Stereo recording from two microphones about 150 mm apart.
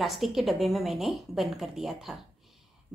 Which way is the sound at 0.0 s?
Centre (ahead or behind).